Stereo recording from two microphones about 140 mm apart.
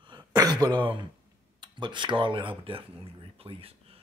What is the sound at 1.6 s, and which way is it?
A man's voice, 35° right (ahead or behind).